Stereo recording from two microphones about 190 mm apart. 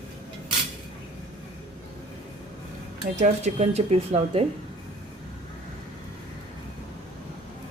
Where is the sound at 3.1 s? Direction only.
35° right (ahead or behind).